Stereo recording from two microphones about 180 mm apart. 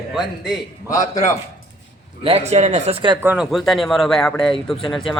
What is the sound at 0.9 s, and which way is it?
Speech, 15° left (ahead or behind).